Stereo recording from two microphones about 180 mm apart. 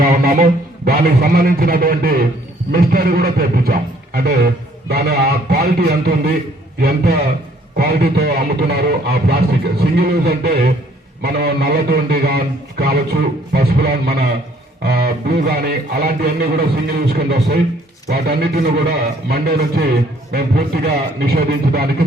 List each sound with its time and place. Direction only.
0.0 s music: 55° right (ahead or behind)
0.9 s a man's voice: 55° right (ahead or behind)